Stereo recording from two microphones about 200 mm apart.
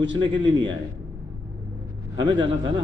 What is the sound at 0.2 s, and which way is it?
Speech, 25° right (ahead or behind).